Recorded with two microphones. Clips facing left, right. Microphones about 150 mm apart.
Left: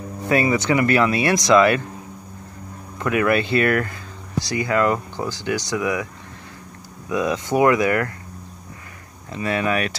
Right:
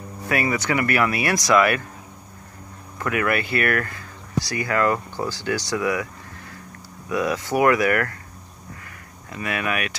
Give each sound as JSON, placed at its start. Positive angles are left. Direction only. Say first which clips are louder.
{"t": 0.3, "sound": "speech", "louder": "left 4 dB", "side_deg": 25}
{"t": 3.0, "sound": "speech", "louder": "left 4 dB", "side_deg": 20}
{"t": 7.1, "sound": "speech", "louder": "left 2 dB", "side_deg": 20}
{"t": 9.3, "sound": "speech", "louder": "left 4 dB", "side_deg": 30}